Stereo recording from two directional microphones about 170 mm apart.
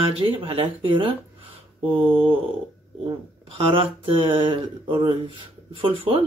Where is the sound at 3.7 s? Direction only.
30° right (ahead or behind).